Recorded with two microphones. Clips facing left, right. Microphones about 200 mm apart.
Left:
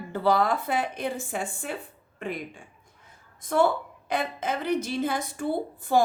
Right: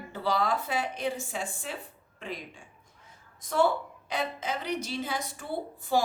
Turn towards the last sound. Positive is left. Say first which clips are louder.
# left 4 dB
turn(degrees=55)  # may be behind; listen again after turning